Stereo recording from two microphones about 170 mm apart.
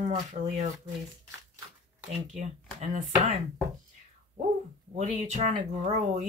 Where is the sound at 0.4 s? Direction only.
50° right (ahead or behind).